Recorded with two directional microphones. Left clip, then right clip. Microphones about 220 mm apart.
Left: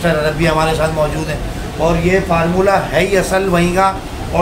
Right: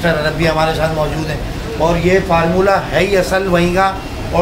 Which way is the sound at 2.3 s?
Centre (ahead or behind).